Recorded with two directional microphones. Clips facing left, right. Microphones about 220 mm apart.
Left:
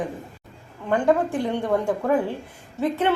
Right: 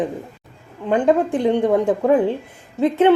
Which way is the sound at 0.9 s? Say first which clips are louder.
Right 4 dB; 20° right (ahead or behind).